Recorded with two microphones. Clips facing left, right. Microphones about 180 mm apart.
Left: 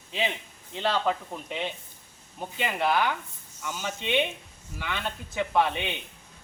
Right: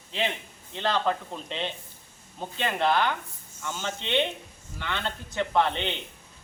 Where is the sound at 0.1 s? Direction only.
15° left (ahead or behind).